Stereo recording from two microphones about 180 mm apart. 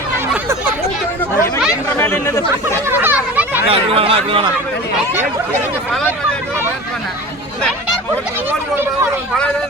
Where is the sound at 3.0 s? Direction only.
10° right (ahead or behind).